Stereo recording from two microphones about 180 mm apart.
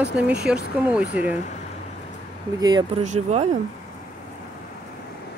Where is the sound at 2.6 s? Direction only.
25° right (ahead or behind).